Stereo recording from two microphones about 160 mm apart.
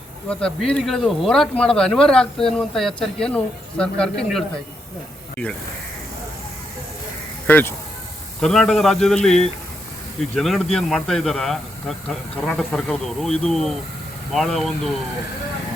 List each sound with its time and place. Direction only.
0.3 s speech: 5° left (ahead or behind)
7.4 s speech: 10° left (ahead or behind)